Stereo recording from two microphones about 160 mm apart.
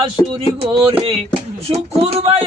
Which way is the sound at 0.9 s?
35° right (ahead or behind).